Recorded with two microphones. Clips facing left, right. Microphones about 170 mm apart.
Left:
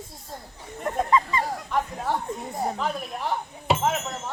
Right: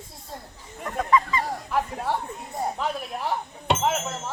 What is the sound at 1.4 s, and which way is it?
Chatter, centre (ahead or behind).